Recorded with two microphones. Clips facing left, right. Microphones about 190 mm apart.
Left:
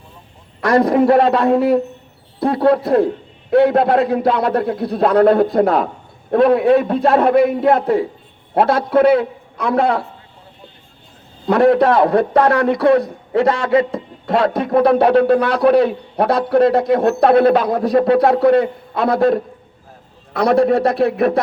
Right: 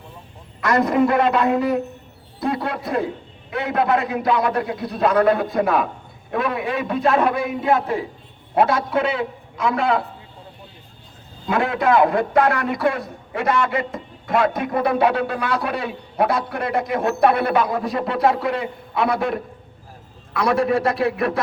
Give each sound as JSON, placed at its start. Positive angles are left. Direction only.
{"t": 0.6, "sound": "a man's voice", "side_deg": 60}
{"t": 11.4, "sound": "a man's voice", "side_deg": 60}
{"t": 20.3, "sound": "a man's voice", "side_deg": 60}